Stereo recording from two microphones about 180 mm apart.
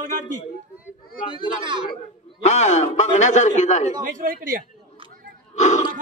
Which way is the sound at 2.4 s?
40° left (ahead or behind).